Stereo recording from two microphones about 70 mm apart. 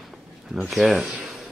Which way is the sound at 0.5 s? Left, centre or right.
Centre.